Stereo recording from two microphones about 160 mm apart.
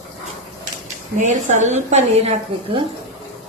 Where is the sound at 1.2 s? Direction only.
50° right (ahead or behind).